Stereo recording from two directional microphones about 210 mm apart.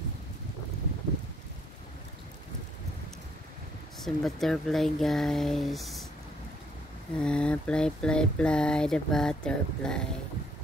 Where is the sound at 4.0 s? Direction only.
Centre (ahead or behind).